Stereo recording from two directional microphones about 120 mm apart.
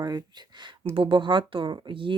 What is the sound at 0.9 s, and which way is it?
Speech, 45° right (ahead or behind).